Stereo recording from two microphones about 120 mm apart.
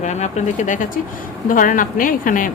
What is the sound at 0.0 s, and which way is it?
Speech, 70° left (ahead or behind).